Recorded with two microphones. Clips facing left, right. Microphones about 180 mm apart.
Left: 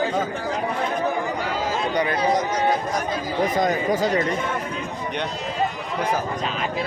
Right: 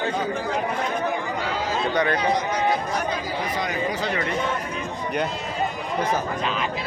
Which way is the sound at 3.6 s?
45° left (ahead or behind).